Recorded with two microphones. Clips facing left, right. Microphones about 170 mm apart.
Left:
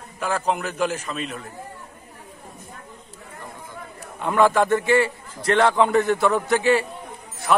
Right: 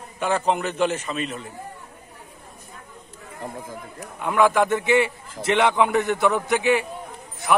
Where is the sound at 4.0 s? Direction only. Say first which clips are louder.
Left 1 dB; 10° right (ahead or behind).